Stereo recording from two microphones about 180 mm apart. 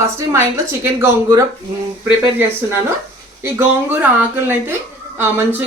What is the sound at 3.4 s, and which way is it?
Speech, 10° right (ahead or behind).